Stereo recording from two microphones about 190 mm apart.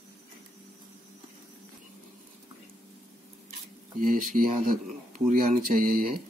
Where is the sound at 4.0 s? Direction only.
45° right (ahead or behind).